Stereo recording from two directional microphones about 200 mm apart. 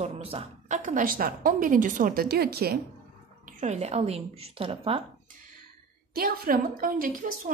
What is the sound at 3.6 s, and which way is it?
A woman's voice, 35° right (ahead or behind).